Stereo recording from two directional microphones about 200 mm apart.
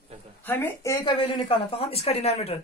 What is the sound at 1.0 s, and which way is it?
Speech, 25° left (ahead or behind).